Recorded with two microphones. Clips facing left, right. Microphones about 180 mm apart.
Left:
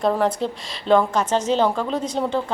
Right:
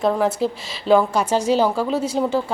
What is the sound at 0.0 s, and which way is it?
A woman's voice, centre (ahead or behind).